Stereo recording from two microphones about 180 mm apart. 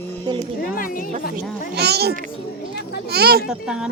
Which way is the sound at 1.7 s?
65° right (ahead or behind).